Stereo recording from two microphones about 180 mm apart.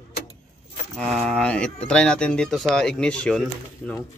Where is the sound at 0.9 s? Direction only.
5° left (ahead or behind).